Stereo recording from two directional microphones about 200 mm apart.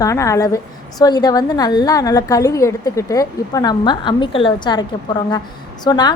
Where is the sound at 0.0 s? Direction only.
15° left (ahead or behind).